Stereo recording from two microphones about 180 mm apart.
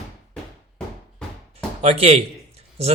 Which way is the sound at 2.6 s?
35° right (ahead or behind).